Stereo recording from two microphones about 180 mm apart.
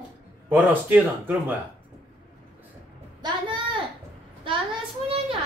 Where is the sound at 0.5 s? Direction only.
10° right (ahead or behind).